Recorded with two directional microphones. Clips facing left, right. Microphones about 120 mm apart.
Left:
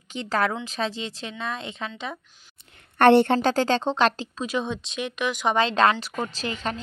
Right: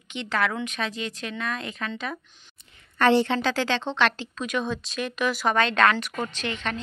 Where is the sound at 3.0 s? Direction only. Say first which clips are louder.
Left 4 dB; 60° left (ahead or behind).